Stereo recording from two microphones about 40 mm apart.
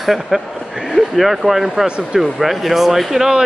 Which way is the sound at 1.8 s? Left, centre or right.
Right.